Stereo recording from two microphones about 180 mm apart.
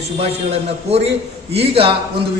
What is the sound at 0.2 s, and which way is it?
A man's voice, 35° right (ahead or behind).